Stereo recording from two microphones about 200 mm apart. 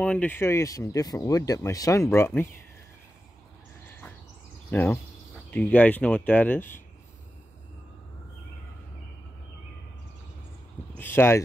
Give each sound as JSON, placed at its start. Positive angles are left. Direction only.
{"t": 0.0, "sound": "speech", "side_deg": 5}
{"t": 4.6, "sound": "speech", "side_deg": 10}
{"t": 11.0, "sound": "speech", "side_deg": 10}